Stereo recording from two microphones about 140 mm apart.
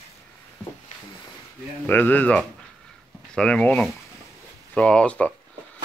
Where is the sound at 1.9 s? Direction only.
10° left (ahead or behind).